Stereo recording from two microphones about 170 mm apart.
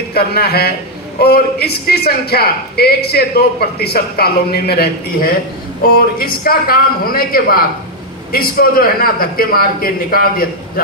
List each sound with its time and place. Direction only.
0.1 s a man's voice: 65° left (ahead or behind)